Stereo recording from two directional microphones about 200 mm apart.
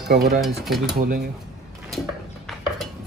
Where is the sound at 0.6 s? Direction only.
Centre (ahead or behind).